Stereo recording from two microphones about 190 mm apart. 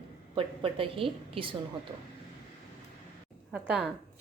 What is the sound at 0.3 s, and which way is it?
A woman's voice, 30° right (ahead or behind).